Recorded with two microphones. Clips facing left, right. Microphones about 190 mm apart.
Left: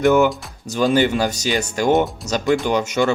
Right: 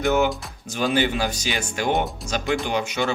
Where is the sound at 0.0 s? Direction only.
50° left (ahead or behind).